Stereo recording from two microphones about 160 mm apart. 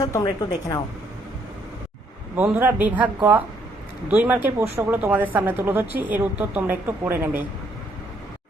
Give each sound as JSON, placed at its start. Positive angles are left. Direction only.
{"t": 0.0, "sound": "a woman's voice", "side_deg": 25}
{"t": 2.3, "sound": "a woman's voice", "side_deg": -10}